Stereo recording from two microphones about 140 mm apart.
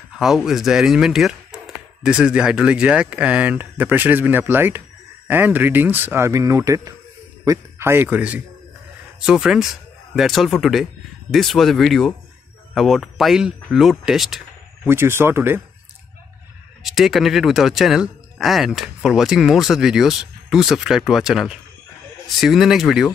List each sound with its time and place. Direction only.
0.2 s speech: centre (ahead or behind)
14.9 s speech: 15° right (ahead or behind)
16.8 s speech: centre (ahead or behind)